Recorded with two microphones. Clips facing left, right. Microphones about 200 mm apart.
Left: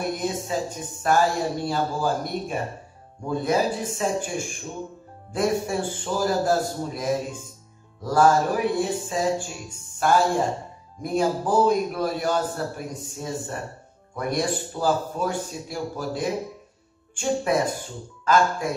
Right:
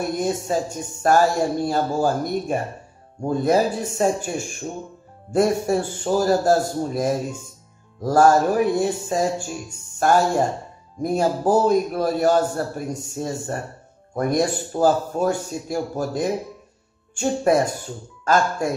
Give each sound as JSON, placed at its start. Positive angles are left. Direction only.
{"t": 0.2, "sound": "a man's voice", "side_deg": -45}
{"t": 11.0, "sound": "a man's voice", "side_deg": -45}